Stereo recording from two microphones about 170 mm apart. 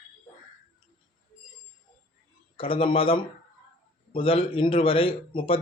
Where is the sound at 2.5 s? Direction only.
30° left (ahead or behind).